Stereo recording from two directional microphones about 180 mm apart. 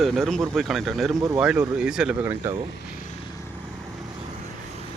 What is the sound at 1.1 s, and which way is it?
Speech, 15° right (ahead or behind).